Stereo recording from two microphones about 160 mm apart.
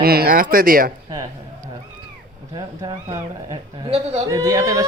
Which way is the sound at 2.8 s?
20° right (ahead or behind).